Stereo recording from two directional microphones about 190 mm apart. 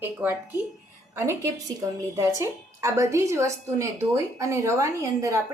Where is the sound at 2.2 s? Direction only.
15° right (ahead or behind).